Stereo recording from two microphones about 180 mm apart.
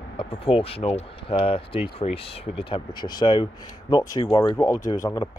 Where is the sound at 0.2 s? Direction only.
30° left (ahead or behind).